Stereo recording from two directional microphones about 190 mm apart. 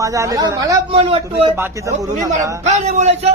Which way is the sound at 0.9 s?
35° right (ahead or behind).